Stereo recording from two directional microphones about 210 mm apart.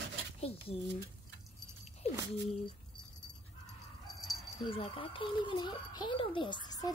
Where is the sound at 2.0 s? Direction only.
30° left (ahead or behind).